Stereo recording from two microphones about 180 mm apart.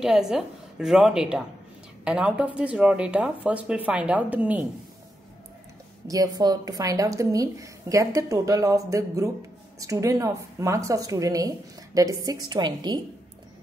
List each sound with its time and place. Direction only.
0.0 s a woman's voice: 5° right (ahead or behind)
6.0 s a woman's voice: 20° right (ahead or behind)